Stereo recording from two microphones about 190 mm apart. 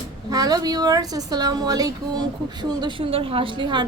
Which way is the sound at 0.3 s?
20° right (ahead or behind).